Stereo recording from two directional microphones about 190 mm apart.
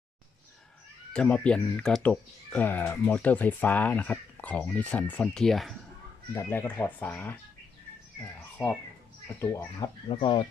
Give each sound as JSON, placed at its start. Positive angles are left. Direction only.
{"t": 1.1, "sound": "speech", "side_deg": 5}
{"t": 6.3, "sound": "a child's voice", "side_deg": 10}
{"t": 10.1, "sound": "speech", "side_deg": 25}